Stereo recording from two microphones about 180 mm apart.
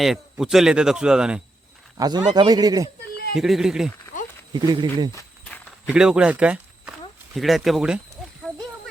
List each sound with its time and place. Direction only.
0.0 s speech: centre (ahead or behind)
2.0 s a man's voice: 20° right (ahead or behind)
3.3 s speech: centre (ahead or behind)
4.5 s a man's voice: 25° right (ahead or behind)
5.9 s speech: 5° right (ahead or behind)